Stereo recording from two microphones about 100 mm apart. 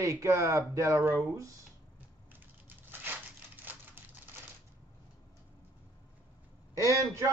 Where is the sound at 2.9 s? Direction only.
20° right (ahead or behind).